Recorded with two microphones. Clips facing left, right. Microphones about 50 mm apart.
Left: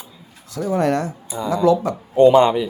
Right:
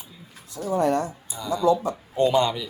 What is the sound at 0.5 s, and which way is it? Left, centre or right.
Speech, left.